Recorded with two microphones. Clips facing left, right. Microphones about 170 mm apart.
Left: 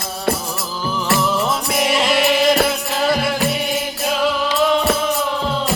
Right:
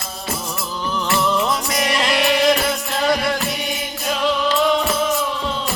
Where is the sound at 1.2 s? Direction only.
5° left (ahead or behind).